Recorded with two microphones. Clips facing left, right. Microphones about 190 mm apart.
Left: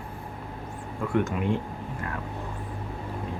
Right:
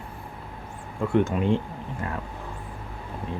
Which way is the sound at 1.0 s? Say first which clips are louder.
Right 4 dB; 25° right (ahead or behind).